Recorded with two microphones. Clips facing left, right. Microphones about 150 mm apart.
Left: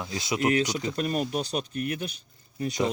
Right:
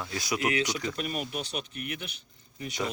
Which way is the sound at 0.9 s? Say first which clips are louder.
Left 6 dB; 40° left (ahead or behind).